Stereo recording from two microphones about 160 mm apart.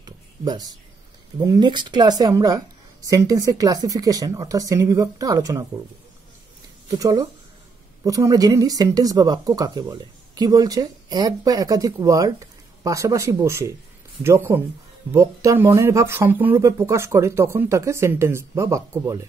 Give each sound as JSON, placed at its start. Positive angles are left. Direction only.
{"t": 0.0, "sound": "a sound", "side_deg": -25}
{"t": 1.4, "sound": "speech", "side_deg": -25}
{"t": 6.9, "sound": "speech", "side_deg": -25}